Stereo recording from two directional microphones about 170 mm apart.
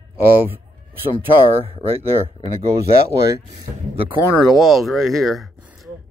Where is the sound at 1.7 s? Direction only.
35° right (ahead or behind).